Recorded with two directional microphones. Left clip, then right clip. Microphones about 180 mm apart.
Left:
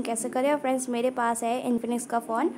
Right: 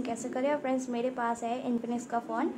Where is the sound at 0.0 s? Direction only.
25° left (ahead or behind).